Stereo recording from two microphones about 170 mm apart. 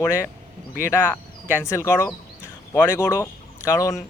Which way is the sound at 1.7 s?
15° left (ahead or behind).